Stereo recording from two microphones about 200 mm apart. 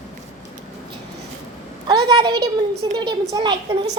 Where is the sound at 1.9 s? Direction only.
20° right (ahead or behind).